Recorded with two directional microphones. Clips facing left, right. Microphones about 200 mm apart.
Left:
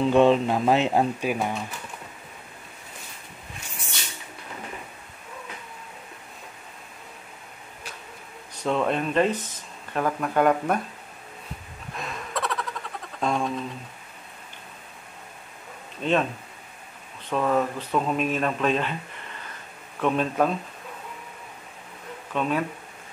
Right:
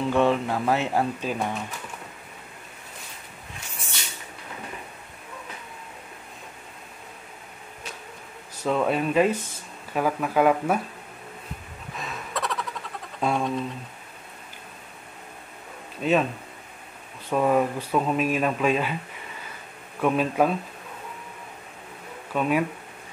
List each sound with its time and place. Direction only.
0.1 s speech: 20° left (ahead or behind)
8.6 s speech: 5° right (ahead or behind)
11.9 s a sound: centre (ahead or behind)
13.2 s speech: 5° right (ahead or behind)
16.0 s speech: 5° right (ahead or behind)
17.3 s speech: 15° right (ahead or behind)
20.0 s speech: 10° right (ahead or behind)
22.3 s speech: 10° right (ahead or behind)